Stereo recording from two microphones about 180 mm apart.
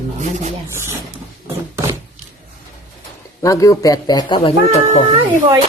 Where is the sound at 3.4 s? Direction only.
20° left (ahead or behind).